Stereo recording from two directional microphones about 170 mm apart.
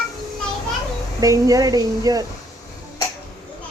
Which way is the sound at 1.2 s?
20° right (ahead or behind).